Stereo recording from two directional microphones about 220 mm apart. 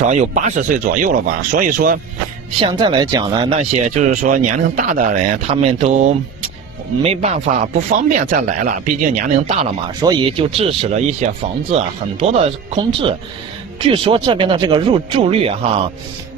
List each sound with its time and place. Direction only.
0.0 s speech: 30° right (ahead or behind)
2.6 s speech: 20° right (ahead or behind)
10.0 s speech: 20° right (ahead or behind)